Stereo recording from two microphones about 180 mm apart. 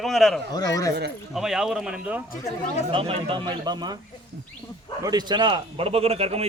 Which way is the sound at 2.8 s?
30° right (ahead or behind).